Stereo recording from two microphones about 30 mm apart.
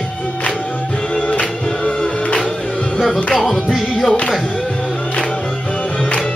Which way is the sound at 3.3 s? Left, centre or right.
Centre.